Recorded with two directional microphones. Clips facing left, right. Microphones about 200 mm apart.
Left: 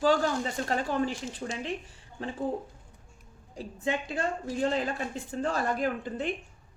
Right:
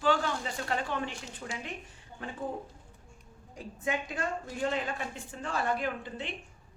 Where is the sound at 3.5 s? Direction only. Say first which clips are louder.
Left 3 dB; 30° left (ahead or behind).